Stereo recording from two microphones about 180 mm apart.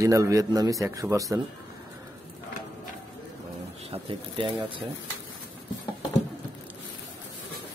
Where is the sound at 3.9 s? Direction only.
30° right (ahead or behind).